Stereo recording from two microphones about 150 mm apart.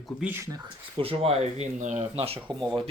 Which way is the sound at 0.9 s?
35° right (ahead or behind).